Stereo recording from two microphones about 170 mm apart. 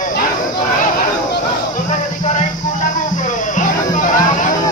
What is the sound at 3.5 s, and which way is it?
Music, 50° left (ahead or behind).